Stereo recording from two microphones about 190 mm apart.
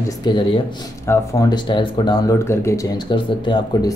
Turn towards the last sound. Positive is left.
turn(degrees=25)  # may be behind; listen again after turning